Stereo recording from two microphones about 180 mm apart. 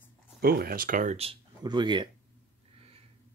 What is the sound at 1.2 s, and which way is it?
Speech, 30° right (ahead or behind).